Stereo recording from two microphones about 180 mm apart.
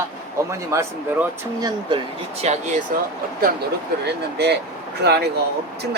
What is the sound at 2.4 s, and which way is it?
Speech, 40° right (ahead or behind).